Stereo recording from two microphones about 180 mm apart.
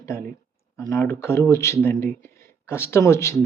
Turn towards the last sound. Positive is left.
turn(degrees=15)  # may be behind; listen again after turning